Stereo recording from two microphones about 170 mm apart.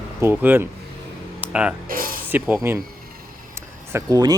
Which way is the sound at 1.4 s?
5° right (ahead or behind).